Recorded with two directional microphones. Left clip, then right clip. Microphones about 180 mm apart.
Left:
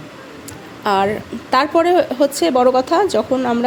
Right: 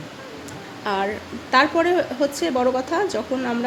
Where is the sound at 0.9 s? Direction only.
30° left (ahead or behind).